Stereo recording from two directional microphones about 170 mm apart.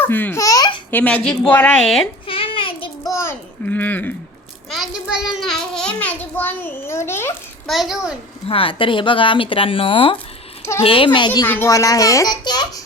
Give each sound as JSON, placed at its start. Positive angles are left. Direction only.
{"t": 0.0, "sound": "a child's voice", "side_deg": 10}
{"t": 0.9, "sound": "a woman's voice", "side_deg": 10}
{"t": 2.2, "sound": "child singing", "side_deg": 30}
{"t": 3.1, "sound": "a sound", "side_deg": 15}
{"t": 4.7, "sound": "a child's voice", "side_deg": -5}
{"t": 7.7, "sound": "a child's voice", "side_deg": 0}
{"t": 8.4, "sound": "a child's voice", "side_deg": 30}
{"t": 11.4, "sound": "a child's voice", "side_deg": 15}